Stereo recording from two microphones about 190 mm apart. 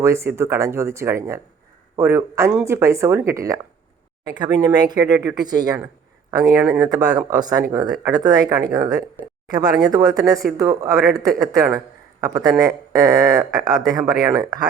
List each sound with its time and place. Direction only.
0.0 s speech: 15° right (ahead or behind)